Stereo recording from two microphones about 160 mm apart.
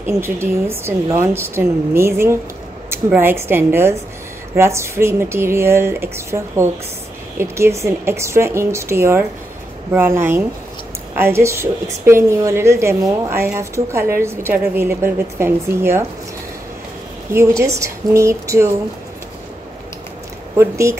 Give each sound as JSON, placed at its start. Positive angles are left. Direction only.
{"t": 0.0, "sound": "a woman's voice", "side_deg": -15}
{"t": 17.3, "sound": "a woman's voice", "side_deg": -15}
{"t": 20.5, "sound": "a woman's voice", "side_deg": -15}